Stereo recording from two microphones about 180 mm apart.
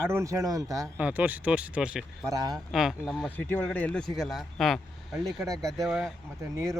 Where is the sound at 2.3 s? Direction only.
20° right (ahead or behind).